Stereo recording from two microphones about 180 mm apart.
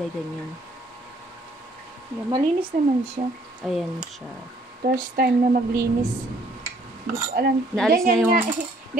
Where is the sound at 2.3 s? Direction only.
30° right (ahead or behind).